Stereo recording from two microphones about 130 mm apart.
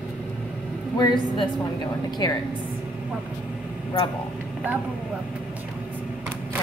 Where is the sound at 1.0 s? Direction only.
35° left (ahead or behind).